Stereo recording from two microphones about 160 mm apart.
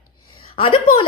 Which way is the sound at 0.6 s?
35° left (ahead or behind).